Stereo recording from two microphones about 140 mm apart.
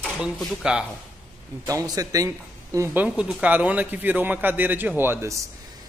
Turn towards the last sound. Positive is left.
turn(degrees=-15)  # may be behind; listen again after turning